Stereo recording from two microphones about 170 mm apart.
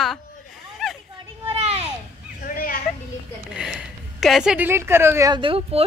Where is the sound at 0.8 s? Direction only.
Centre (ahead or behind).